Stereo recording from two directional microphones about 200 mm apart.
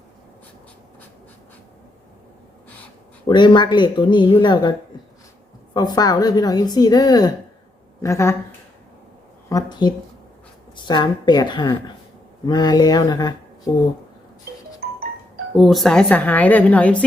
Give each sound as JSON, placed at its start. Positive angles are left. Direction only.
{"t": 3.2, "sound": "a woman's voice", "side_deg": 20}
{"t": 5.7, "sound": "a woman's voice", "side_deg": 20}
{"t": 9.5, "sound": "a woman's voice", "side_deg": 20}
{"t": 14.8, "sound": "music", "side_deg": -45}
{"t": 15.5, "sound": "speech", "side_deg": 0}